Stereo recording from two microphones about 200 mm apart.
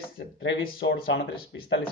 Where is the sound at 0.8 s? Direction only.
60° left (ahead or behind).